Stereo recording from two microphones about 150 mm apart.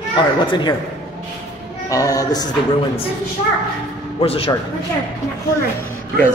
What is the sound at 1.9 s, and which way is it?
Speech, 25° left (ahead or behind).